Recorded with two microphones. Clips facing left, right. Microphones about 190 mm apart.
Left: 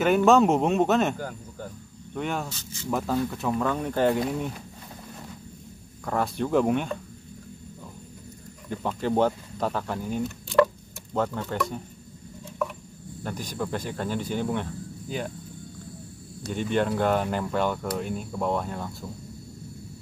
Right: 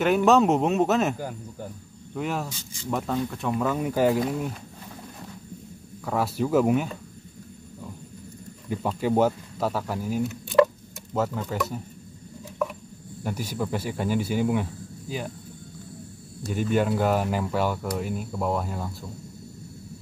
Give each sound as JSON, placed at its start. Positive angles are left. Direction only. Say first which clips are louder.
{"t": 0.0, "sound": "speech", "louder": "even", "side_deg": 0}
{"t": 6.0, "sound": "speech", "louder": "right 1 dB", "side_deg": -5}
{"t": 8.6, "sound": "speech", "louder": "right 2 dB", "side_deg": -10}
{"t": 13.2, "sound": "speech", "louder": "right 2 dB", "side_deg": -10}
{"t": 16.4, "sound": "speech", "louder": "right 2 dB", "side_deg": -5}